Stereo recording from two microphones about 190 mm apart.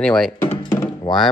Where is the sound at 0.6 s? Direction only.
20° left (ahead or behind).